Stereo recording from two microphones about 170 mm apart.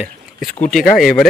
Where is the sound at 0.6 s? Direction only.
5° left (ahead or behind).